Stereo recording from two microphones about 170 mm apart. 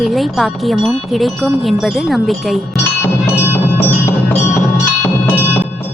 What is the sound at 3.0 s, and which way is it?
Music, 15° left (ahead or behind).